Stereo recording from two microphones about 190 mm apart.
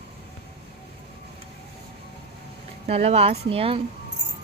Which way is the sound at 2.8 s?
30° right (ahead or behind).